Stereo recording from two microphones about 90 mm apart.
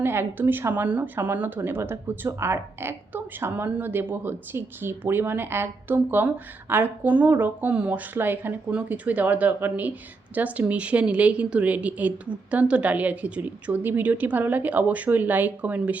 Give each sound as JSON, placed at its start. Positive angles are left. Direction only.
{"t": 0.0, "sound": "a woman's voice", "side_deg": -25}